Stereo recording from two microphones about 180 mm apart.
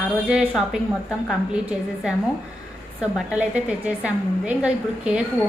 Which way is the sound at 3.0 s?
5° right (ahead or behind).